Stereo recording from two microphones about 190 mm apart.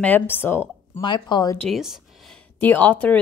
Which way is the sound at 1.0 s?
25° left (ahead or behind).